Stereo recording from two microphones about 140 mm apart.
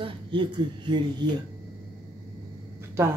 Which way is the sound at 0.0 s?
35° right (ahead or behind).